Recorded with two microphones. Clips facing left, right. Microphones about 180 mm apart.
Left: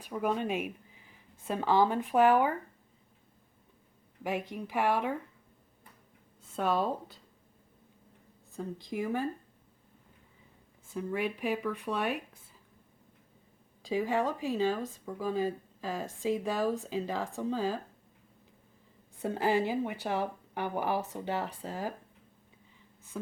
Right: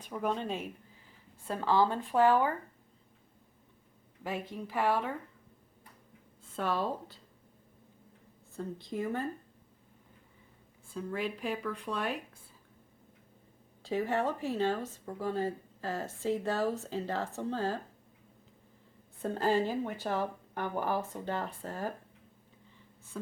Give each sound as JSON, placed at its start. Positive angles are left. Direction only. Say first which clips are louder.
{"t": 0.0, "sound": "speech", "louder": "left 2 dB", "side_deg": 10}
{"t": 4.2, "sound": "speech", "louder": "left 3 dB", "side_deg": 15}
{"t": 6.6, "sound": "speech", "louder": "left 3 dB", "side_deg": 15}
{"t": 8.5, "sound": "speech", "louder": "left 1 dB", "side_deg": 15}
{"t": 10.8, "sound": "speech", "louder": "left 2 dB", "side_deg": 15}
{"t": 13.8, "sound": "speech", "louder": "left 1 dB", "side_deg": 10}
{"t": 19.2, "sound": "speech", "louder": "left 1 dB", "side_deg": 15}